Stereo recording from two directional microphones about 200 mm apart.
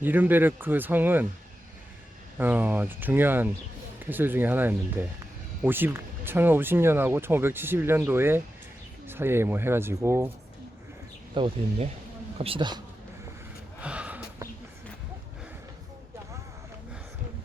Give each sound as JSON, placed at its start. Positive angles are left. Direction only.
{"t": 0.0, "sound": "speech", "side_deg": -10}
{"t": 2.4, "sound": "speech", "side_deg": -10}
{"t": 11.3, "sound": "speech", "side_deg": -25}
{"t": 13.8, "sound": "gasp", "side_deg": -5}